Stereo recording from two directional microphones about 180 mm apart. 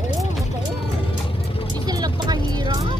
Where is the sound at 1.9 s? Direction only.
20° right (ahead or behind).